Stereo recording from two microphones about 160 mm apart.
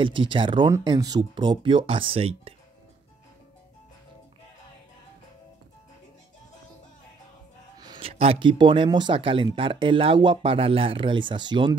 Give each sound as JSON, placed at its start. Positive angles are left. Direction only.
{"t": 0.0, "sound": "speech", "side_deg": -30}
{"t": 7.8, "sound": "a sound", "side_deg": -25}
{"t": 8.1, "sound": "speech", "side_deg": -35}